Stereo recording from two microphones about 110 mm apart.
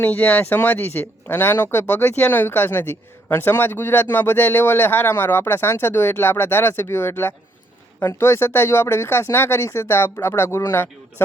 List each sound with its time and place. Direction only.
0.0 s speech: 15° left (ahead or behind)